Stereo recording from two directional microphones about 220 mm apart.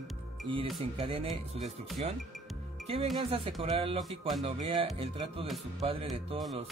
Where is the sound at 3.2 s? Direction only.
25° right (ahead or behind).